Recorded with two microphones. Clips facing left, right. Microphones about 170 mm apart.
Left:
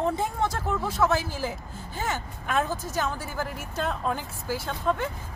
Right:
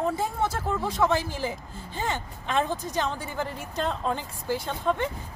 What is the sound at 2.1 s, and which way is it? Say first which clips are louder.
A woman's voice: left 1 dB; 20° right (ahead or behind).